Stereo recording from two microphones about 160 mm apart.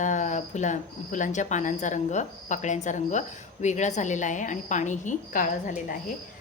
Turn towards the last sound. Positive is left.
turn(degrees=50)  # may be behind; listen again after turning